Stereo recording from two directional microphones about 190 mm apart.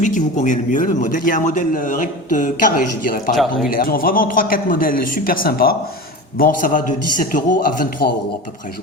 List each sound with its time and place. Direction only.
0.0 s a man's voice: 40° left (ahead or behind)